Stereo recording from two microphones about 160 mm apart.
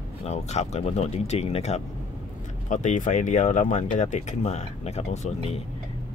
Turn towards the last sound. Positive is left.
turn(degrees=40)  # may be behind; listen again after turning